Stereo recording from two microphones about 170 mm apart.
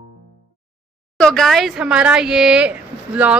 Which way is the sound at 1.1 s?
5° left (ahead or behind).